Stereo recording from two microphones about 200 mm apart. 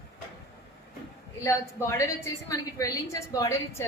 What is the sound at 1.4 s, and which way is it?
A woman's voice, 15° left (ahead or behind).